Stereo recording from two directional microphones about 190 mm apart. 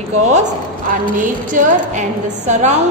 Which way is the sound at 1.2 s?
40° right (ahead or behind).